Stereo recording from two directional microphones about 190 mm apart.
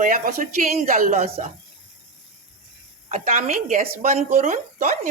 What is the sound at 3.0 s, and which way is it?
A woman's voice, 40° right (ahead or behind).